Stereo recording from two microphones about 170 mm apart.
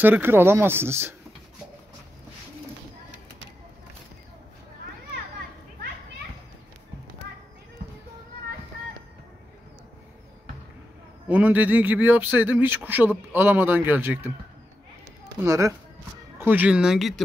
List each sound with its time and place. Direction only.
0.0 s a man's voice: 10° right (ahead or behind)
11.2 s a man's voice: 10° right (ahead or behind)
15.4 s a man's voice: 20° right (ahead or behind); by 17.2 s centre (ahead or behind)